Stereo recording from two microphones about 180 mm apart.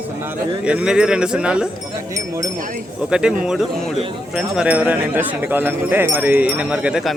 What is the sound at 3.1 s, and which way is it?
Speech, 5° right (ahead or behind).